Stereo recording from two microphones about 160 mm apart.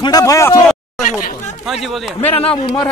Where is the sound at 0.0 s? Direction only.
20° left (ahead or behind).